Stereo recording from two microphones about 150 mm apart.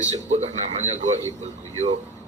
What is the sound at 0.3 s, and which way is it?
Speech, 50° right (ahead or behind).